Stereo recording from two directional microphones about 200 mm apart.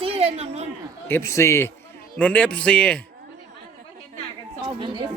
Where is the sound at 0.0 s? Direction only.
30° right (ahead or behind).